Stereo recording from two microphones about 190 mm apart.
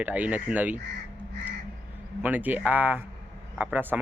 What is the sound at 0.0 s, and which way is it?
Speech, 10° right (ahead or behind).